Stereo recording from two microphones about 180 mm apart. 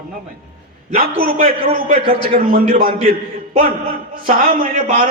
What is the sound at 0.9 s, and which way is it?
A man's voice, 50° right (ahead or behind).